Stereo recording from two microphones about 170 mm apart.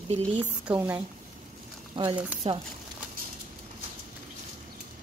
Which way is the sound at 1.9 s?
30° right (ahead or behind).